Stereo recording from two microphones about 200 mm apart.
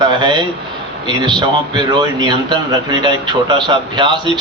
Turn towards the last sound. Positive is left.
turn(degrees=-20)  # may be behind; listen again after turning